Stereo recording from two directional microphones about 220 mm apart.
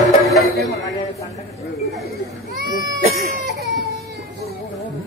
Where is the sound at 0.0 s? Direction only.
Centre (ahead or behind).